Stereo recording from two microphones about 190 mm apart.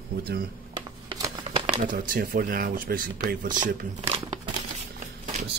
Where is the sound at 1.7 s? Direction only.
45° right (ahead or behind).